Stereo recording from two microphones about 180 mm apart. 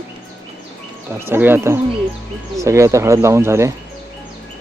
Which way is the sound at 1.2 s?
10° right (ahead or behind).